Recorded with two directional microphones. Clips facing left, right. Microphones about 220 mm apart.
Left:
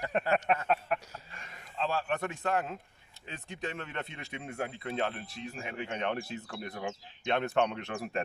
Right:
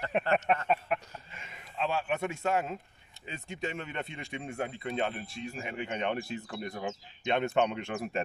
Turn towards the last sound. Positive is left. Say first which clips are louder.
# right 1 dB
turn(degrees=-5)  # may be behind; listen again after turning